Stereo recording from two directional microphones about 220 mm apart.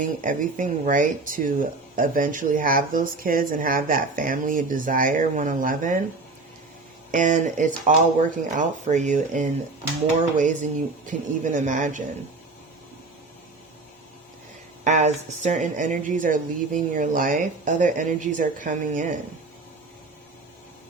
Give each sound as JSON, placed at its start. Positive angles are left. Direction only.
{"t": 0.2, "sound": "speech", "side_deg": -35}
{"t": 7.1, "sound": "speech", "side_deg": -35}
{"t": 14.8, "sound": "speech", "side_deg": -35}